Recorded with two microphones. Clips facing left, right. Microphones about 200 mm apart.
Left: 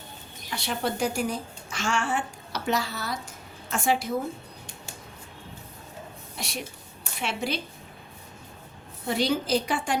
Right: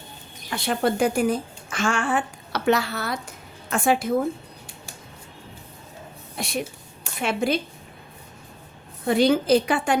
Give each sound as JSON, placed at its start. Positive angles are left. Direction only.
{"t": 0.5, "sound": "a woman's voice", "side_deg": -50}
{"t": 6.3, "sound": "a woman's voice", "side_deg": -55}
{"t": 9.0, "sound": "a woman's voice", "side_deg": -55}